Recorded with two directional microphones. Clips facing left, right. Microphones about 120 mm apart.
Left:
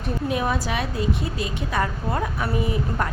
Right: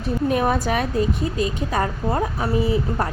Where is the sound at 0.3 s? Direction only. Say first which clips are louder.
Right 4 dB; 45° right (ahead or behind).